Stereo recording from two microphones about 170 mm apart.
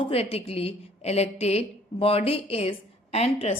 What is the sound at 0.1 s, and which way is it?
A woman's voice, 35° left (ahead or behind).